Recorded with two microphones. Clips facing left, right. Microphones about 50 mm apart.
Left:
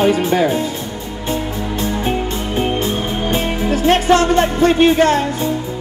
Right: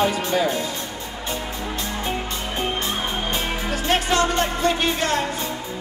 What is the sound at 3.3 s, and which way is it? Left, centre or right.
Music, left.